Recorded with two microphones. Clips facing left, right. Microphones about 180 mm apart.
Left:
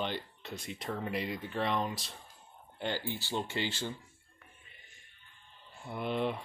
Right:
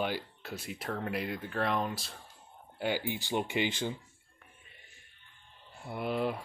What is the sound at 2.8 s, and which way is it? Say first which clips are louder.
Speech: right 3 dB; 15° right (ahead or behind).